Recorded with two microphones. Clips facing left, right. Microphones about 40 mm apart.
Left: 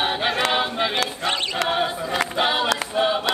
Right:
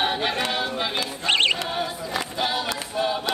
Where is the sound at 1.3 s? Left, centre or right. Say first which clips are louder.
Right 5 dB; right.